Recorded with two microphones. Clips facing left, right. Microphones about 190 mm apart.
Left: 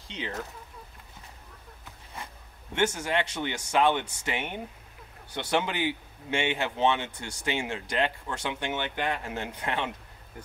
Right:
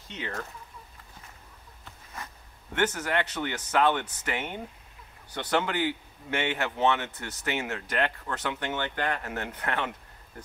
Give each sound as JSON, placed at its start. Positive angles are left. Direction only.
{"t": 0.1, "sound": "speech", "side_deg": 20}
{"t": 2.7, "sound": "speech", "side_deg": 10}